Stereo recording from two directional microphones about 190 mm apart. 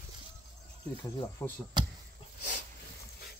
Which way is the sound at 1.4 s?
10° left (ahead or behind).